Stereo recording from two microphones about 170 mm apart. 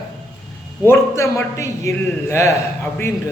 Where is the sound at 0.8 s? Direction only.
15° left (ahead or behind).